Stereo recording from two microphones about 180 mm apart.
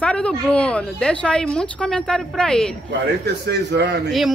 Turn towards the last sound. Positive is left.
turn(degrees=-70)  # may be behind; listen again after turning